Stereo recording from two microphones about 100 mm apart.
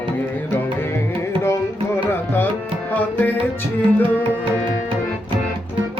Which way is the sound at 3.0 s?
20° left (ahead or behind).